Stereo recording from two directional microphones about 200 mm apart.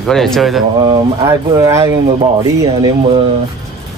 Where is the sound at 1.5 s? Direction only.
15° right (ahead or behind).